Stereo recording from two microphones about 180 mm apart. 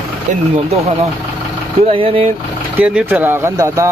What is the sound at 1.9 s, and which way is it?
Speech, 30° right (ahead or behind).